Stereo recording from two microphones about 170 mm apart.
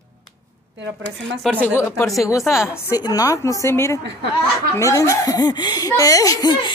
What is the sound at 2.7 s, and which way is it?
Speech, 20° left (ahead or behind).